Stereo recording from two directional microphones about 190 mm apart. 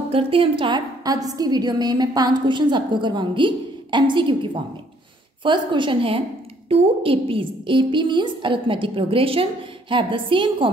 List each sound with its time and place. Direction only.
0.1 s a woman's voice: 30° right (ahead or behind)